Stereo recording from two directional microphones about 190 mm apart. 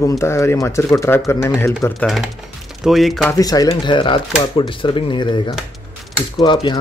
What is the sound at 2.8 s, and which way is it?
Speech, centre (ahead or behind).